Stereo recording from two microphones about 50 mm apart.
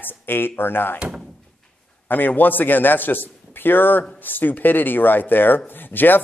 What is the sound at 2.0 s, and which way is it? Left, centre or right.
A man's voice, left.